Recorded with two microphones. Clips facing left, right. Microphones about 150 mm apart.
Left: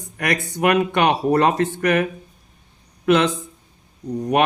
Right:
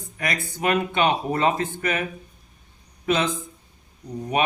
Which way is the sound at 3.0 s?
70° left (ahead or behind).